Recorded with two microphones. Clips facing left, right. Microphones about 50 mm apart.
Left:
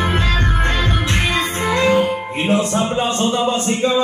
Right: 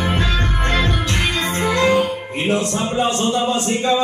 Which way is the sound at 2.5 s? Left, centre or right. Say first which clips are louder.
Left 3 dB; centre.